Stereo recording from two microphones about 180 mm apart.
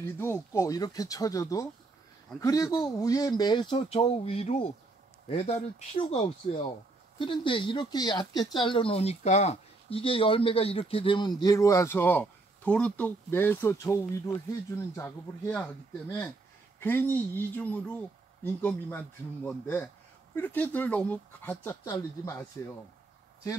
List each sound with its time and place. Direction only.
0.0 s speech: 15° left (ahead or behind)